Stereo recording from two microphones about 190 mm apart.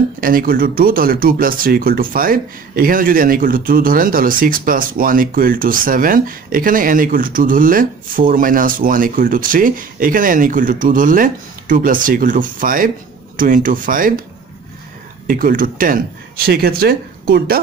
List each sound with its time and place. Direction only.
0.2 s speech: 50° right (ahead or behind)
15.2 s speech: 45° right (ahead or behind)